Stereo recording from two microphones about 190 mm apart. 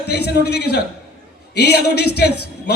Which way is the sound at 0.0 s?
60° left (ahead or behind).